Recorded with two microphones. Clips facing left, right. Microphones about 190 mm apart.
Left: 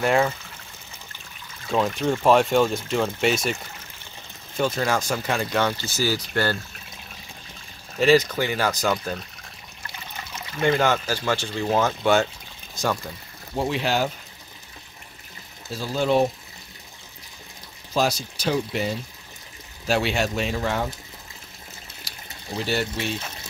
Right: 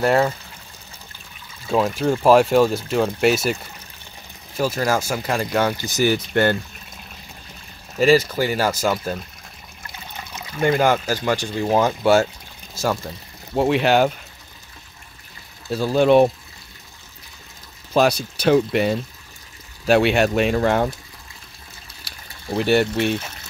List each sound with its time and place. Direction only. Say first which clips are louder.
0.0 s speech: right 3 dB; 35° right (ahead or behind)
1.7 s speech: right 3 dB; 5° right (ahead or behind)
4.6 s speech: right 2 dB; 5° right (ahead or behind); by 6.5 s 20° right (ahead or behind)
8.0 s speech: right 2 dB; 10° right (ahead or behind)
10.6 s speech: right 3 dB; 10° right (ahead or behind)
13.6 s speech: right 7 dB; 65° right (ahead or behind)
15.7 s speech: right 7 dB; 65° right (ahead or behind)
17.9 s speech: right 6 dB; 60° right (ahead or behind)
22.5 s speech: right 8 dB; 60° right (ahead or behind)